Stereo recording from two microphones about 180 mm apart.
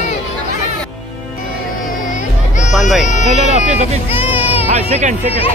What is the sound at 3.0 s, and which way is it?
Speech, 40° left (ahead or behind).